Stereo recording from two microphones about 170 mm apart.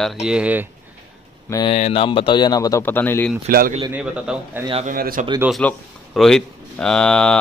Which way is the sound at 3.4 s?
60° right (ahead or behind).